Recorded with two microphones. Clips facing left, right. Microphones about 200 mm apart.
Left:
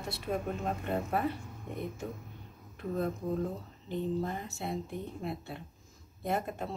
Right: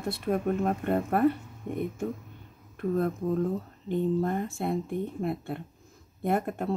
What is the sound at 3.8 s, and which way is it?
Speech, 55° right (ahead or behind).